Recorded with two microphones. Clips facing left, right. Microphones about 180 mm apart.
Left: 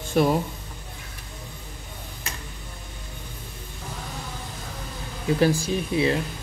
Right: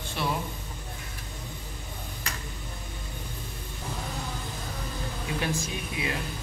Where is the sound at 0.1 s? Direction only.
45° left (ahead or behind).